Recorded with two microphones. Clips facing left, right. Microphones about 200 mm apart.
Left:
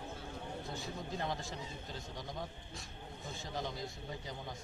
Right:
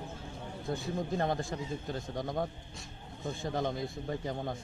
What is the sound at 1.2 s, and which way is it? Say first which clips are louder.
A man's voice: right 8 dB; 55° right (ahead or behind).